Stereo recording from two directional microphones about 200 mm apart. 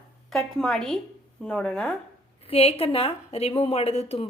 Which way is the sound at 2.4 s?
30° left (ahead or behind).